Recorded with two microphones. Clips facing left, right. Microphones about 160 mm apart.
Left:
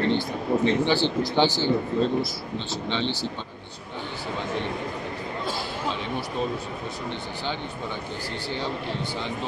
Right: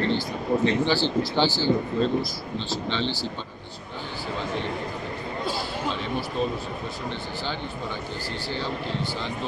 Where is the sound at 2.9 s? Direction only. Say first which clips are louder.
Left 2 dB; 20° left (ahead or behind).